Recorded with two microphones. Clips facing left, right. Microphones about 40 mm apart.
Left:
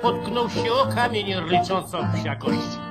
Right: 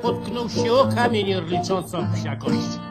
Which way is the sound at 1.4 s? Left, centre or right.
Left.